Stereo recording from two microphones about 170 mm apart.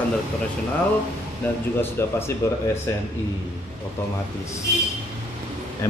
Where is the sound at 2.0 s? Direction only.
15° left (ahead or behind).